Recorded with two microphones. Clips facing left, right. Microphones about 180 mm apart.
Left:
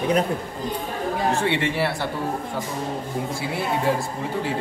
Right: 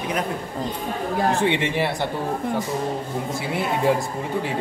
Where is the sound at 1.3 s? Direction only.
15° right (ahead or behind).